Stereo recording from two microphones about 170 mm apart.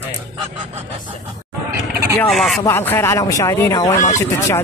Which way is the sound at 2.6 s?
15° left (ahead or behind).